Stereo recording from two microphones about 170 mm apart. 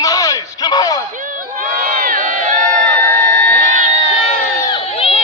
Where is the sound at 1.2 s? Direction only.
50° right (ahead or behind).